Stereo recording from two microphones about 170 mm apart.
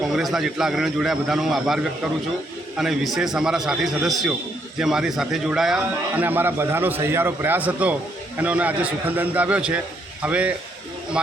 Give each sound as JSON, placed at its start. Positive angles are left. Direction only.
{"t": 0.0, "sound": "a man's voice", "side_deg": 0}